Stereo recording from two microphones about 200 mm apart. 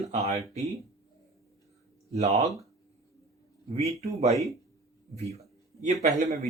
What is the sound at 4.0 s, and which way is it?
Speech, 30° right (ahead or behind).